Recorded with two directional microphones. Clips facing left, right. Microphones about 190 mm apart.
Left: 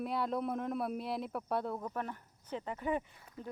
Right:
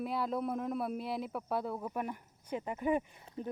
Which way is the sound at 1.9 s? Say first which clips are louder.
Right 2 dB; 15° right (ahead or behind).